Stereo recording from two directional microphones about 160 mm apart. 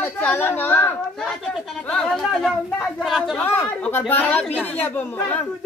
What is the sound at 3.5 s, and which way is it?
A woman's voice, 15° left (ahead or behind).